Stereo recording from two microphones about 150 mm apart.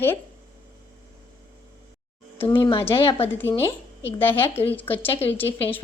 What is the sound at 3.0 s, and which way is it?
Speech, 40° left (ahead or behind).